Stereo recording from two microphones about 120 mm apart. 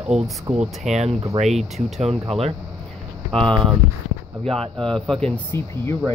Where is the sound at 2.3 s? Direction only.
55° right (ahead or behind).